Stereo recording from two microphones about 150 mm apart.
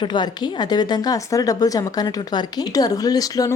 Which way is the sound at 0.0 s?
30° left (ahead or behind).